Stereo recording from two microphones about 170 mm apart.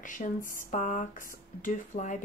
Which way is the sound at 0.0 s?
50° left (ahead or behind).